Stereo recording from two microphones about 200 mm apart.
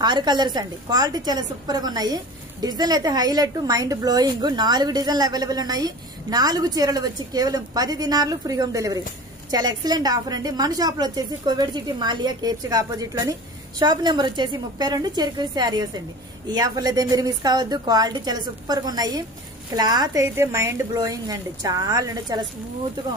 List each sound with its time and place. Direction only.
0.0 s a woman's voice: 20° right (ahead or behind)